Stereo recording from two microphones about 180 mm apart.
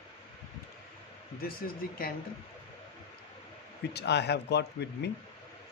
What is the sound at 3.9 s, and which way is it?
Speech, 70° left (ahead or behind).